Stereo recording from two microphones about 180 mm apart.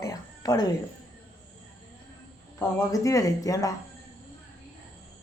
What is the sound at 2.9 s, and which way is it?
Speech, 20° left (ahead or behind).